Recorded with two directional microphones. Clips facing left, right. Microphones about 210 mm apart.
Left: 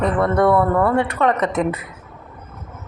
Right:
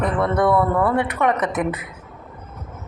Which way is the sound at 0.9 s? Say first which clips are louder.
Left 2 dB; 15° right (ahead or behind).